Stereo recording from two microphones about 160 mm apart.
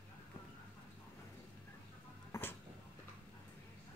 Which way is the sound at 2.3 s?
15° left (ahead or behind).